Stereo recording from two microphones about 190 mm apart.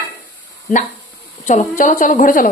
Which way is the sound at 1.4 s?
40° left (ahead or behind).